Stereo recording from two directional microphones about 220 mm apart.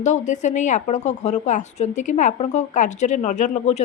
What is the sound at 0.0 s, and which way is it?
Speech, 35° left (ahead or behind).